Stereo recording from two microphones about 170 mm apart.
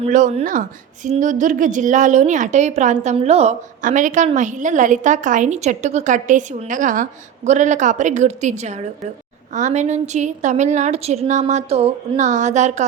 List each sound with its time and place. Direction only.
0.0 s a woman's voice: 45° right (ahead or behind)